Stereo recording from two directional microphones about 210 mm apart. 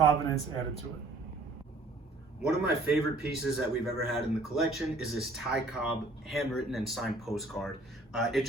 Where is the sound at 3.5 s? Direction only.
Centre (ahead or behind).